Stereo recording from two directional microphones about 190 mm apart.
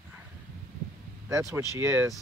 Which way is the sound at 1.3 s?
15° right (ahead or behind).